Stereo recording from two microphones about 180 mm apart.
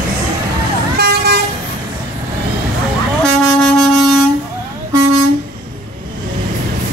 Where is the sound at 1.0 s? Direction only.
65° right (ahead or behind).